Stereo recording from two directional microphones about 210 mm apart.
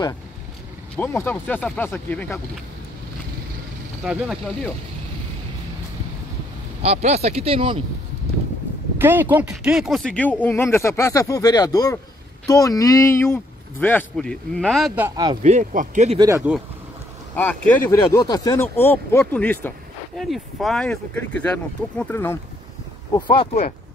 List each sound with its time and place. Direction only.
0.9 s speech: 10° left (ahead or behind)
4.0 s speech: 5° right (ahead or behind)
6.8 s speech: 30° right (ahead or behind)
8.9 s speech: 10° right (ahead or behind)
15.0 s speech: 15° right (ahead or behind)
15.4 s speech: 35° right (ahead or behind)
16.2 s speech: 15° right (ahead or behind)
17.4 s speech: 5° left (ahead or behind)
23.1 s speech: 25° left (ahead or behind)